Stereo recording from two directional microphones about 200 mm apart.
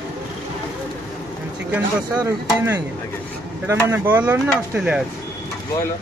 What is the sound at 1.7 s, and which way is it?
Speech, 15° right (ahead or behind).